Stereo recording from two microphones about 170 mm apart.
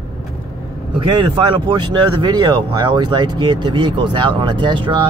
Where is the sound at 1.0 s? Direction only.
30° right (ahead or behind).